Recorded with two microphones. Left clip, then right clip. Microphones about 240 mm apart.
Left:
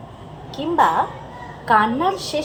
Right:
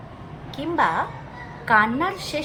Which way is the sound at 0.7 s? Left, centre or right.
Right.